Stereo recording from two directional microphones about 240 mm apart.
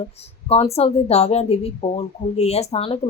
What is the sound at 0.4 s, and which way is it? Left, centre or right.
A woman's voice, left.